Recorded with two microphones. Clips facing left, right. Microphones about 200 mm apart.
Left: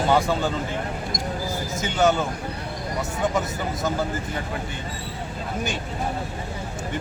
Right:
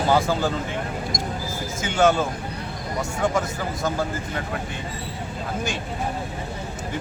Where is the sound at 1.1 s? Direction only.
45° right (ahead or behind).